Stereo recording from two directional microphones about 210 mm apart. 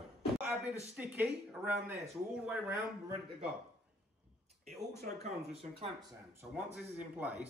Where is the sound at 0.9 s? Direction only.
5° right (ahead or behind).